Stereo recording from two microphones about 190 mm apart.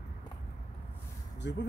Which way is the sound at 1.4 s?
65° left (ahead or behind).